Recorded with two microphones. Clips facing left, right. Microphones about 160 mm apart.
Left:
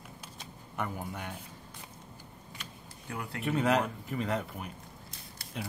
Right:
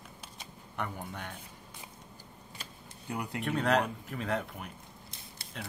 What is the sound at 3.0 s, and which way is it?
Speech, 20° right (ahead or behind).